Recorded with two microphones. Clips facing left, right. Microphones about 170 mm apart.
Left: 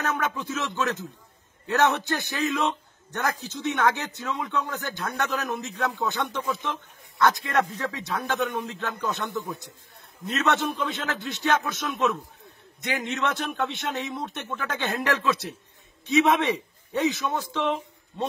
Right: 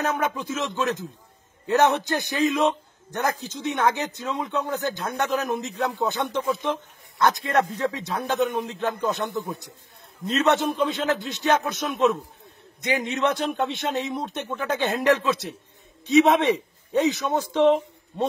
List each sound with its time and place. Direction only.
0.1 s a man's voice: 20° right (ahead or behind)